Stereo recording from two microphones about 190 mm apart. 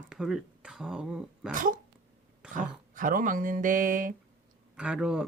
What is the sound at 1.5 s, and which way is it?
Speech, 45° right (ahead or behind).